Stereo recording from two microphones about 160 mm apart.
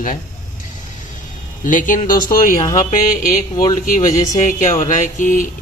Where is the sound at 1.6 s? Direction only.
55° left (ahead or behind).